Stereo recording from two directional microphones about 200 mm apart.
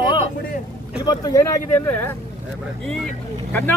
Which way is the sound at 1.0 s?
20° left (ahead or behind).